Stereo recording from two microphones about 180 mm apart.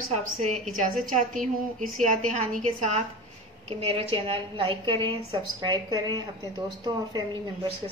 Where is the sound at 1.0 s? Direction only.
45° right (ahead or behind).